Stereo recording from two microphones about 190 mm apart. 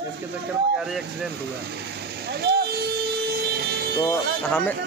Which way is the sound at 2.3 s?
55° right (ahead or behind).